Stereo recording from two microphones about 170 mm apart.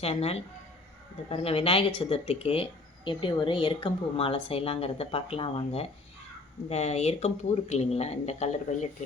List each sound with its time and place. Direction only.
0.0 s speech: 35° left (ahead or behind)